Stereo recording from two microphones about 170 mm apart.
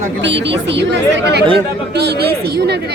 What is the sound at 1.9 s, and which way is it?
Speech, 70° right (ahead or behind).